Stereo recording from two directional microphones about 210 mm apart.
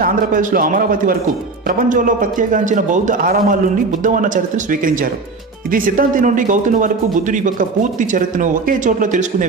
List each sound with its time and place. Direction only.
0.0 s a man's voice: 40° right (ahead or behind)